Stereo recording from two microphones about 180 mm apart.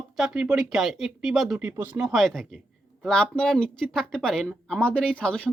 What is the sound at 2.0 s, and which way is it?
Speech, centre (ahead or behind).